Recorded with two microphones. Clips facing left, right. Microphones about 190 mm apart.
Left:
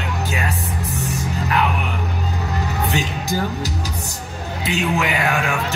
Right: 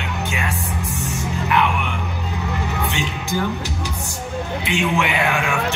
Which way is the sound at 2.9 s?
40° left (ahead or behind).